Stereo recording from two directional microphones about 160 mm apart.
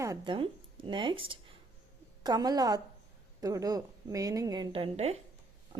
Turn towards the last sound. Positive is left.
turn(degrees=-40)  # may be behind; listen again after turning